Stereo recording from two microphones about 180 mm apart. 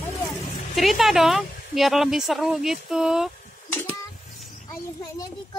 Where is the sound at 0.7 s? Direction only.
Centre (ahead or behind).